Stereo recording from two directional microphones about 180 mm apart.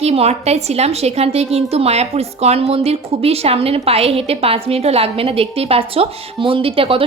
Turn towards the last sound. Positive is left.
turn(degrees=-30)  # may be behind; listen again after turning